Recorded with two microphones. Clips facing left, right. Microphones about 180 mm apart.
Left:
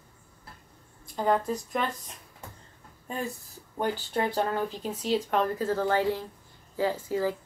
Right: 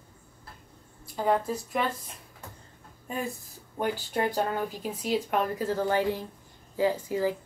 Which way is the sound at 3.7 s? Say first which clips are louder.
Even; 10° right (ahead or behind).